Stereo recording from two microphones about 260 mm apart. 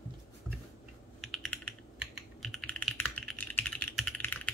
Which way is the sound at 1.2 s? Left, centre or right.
Centre.